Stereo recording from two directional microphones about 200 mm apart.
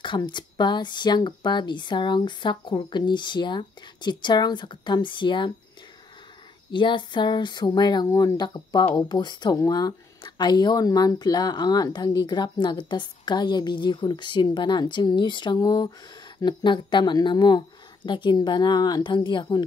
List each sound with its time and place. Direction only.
0.0 s speech: 25° left (ahead or behind)
6.7 s speech: 25° left (ahead or behind)